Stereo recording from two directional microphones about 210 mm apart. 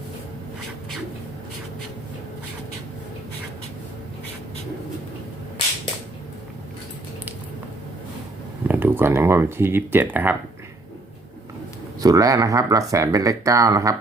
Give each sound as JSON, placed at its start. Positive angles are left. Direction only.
{"t": 8.6, "sound": "speech", "side_deg": -10}
{"t": 11.9, "sound": "speech", "side_deg": -15}